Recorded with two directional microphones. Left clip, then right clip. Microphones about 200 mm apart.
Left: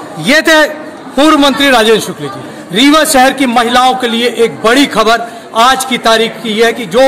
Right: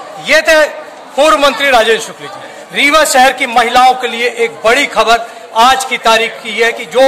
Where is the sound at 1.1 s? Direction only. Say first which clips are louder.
Left 1 dB; 10° left (ahead or behind).